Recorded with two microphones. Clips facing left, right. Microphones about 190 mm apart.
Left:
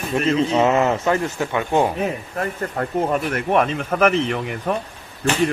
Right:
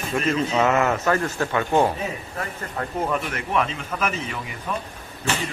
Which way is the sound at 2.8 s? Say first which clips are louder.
Left 4 dB; 45° left (ahead or behind).